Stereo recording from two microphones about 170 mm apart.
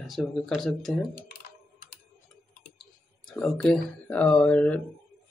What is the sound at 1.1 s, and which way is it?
Typing, 60° left (ahead or behind).